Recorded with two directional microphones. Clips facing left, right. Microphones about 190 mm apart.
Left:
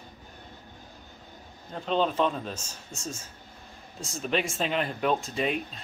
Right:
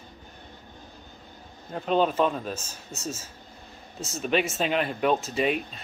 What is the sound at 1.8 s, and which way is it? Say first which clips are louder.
Speech: right 3 dB; 10° right (ahead or behind).